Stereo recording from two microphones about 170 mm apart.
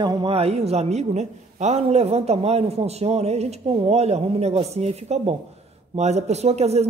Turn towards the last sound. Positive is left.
turn(degrees=-40)  # may be behind; listen again after turning